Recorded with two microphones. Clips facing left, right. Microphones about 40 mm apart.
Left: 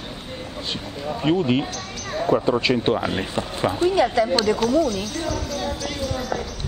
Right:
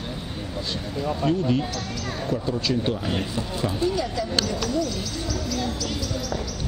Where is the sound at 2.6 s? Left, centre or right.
Left.